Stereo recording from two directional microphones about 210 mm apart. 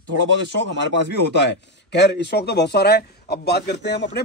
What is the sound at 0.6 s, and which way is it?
A man's voice, 55° left (ahead or behind).